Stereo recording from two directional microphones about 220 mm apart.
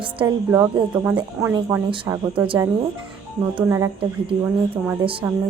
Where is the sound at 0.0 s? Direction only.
20° right (ahead or behind).